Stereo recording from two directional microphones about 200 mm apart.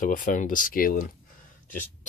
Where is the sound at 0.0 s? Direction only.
40° left (ahead or behind).